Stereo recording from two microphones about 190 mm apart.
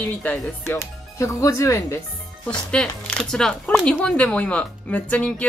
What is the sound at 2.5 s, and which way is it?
Speech, 5° left (ahead or behind).